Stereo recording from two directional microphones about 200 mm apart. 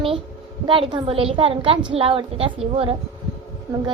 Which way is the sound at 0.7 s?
25° right (ahead or behind).